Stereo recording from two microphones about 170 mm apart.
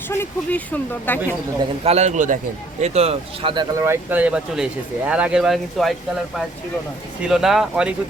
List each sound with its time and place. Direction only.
0.1 s speech: 10° left (ahead or behind)
1.8 s a man's voice: 40° right (ahead or behind)
3.8 s speech: 10° right (ahead or behind)
7.2 s speech: 5° right (ahead or behind)